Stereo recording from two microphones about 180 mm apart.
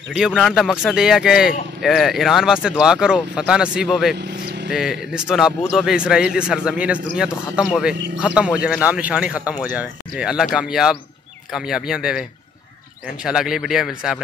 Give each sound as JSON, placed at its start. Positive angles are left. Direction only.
{"t": 0.1, "sound": "a man's voice", "side_deg": 0}
{"t": 4.2, "sound": "vehicle", "side_deg": -70}
{"t": 4.6, "sound": "a man's voice", "side_deg": -5}